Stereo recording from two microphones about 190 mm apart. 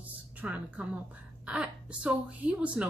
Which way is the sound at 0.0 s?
10° right (ahead or behind).